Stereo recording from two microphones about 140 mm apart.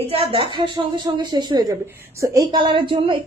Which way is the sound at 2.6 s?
35° right (ahead or behind).